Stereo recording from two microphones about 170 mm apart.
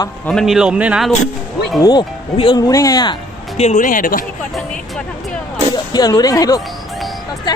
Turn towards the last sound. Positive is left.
turn(degrees=25)  # may be behind; listen again after turning